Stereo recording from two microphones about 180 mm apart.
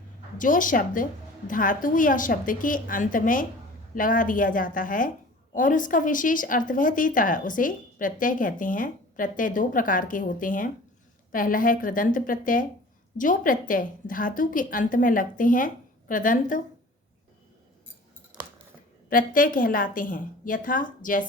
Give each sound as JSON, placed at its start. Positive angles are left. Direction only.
{"t": 0.3, "sound": "a woman's voice", "side_deg": 45}
{"t": 19.1, "sound": "a woman's voice", "side_deg": 50}